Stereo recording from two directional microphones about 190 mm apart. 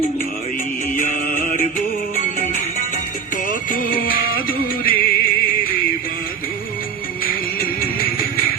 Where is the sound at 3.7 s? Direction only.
50° left (ahead or behind).